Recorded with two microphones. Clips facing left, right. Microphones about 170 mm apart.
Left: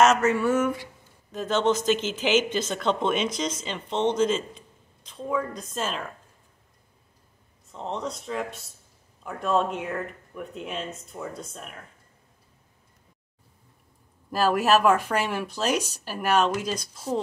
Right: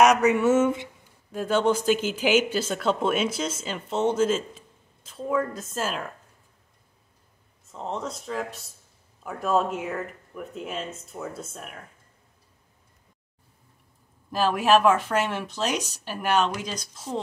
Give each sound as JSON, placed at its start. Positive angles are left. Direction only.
{"t": 0.0, "sound": "a sound", "side_deg": -15}
{"t": 1.3, "sound": "speech", "side_deg": -10}
{"t": 7.6, "sound": "speech", "side_deg": 0}
{"t": 14.3, "sound": "speech", "side_deg": 5}